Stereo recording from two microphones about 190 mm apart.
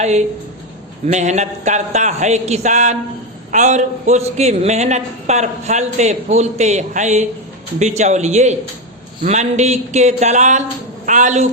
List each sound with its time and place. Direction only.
1.0 s a woman's voice: 40° right (ahead or behind)